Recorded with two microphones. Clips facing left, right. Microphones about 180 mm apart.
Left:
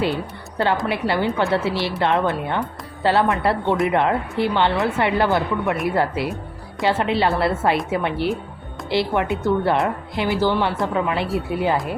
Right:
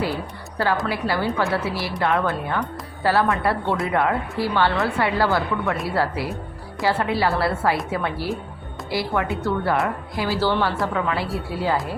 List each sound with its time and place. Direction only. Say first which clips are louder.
0.9 s speech: left 2 dB; 25° left (ahead or behind)